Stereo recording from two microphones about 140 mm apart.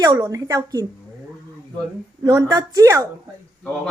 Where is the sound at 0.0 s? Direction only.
25° right (ahead or behind).